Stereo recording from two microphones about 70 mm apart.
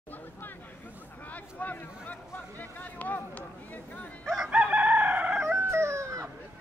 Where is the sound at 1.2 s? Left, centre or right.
Left.